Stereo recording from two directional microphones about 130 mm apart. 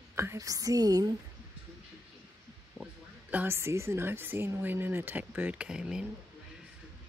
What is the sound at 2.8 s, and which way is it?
Speech, 10° right (ahead or behind).